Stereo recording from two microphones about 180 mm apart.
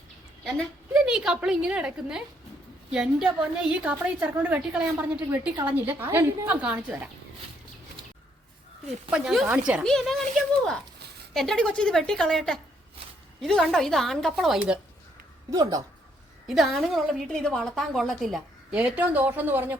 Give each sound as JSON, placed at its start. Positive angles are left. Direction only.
{"t": 0.4, "sound": "a woman's voice", "side_deg": 0}
{"t": 9.0, "sound": "a woman's voice", "side_deg": -5}
{"t": 11.3, "sound": "a woman's voice", "side_deg": 0}
{"t": 15.4, "sound": "speech", "side_deg": -20}
{"t": 16.5, "sound": "a woman's voice", "side_deg": 0}